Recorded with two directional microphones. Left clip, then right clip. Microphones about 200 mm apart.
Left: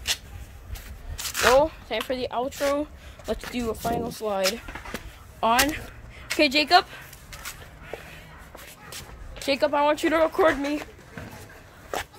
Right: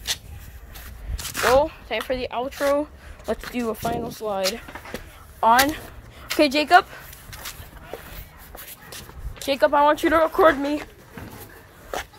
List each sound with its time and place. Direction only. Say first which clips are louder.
1.3 s a sound: right 1 dB; 20° right (ahead or behind)
1.6 s speech: right 1 dB; 10° right (ahead or behind)
9.4 s speech: right 4 dB; 20° right (ahead or behind)